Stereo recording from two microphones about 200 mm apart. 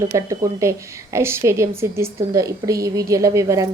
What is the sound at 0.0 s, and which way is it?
A woman's voice, 15° right (ahead or behind).